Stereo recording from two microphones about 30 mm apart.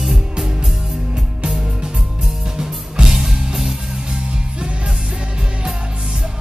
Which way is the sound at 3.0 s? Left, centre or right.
Centre.